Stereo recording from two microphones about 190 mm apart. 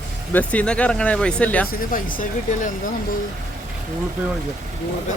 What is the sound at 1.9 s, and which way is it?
Speech, 45° left (ahead or behind).